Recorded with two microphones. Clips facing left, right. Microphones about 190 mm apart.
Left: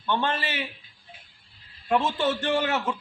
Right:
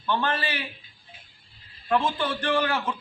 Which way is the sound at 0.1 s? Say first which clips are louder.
Even; 25° left (ahead or behind).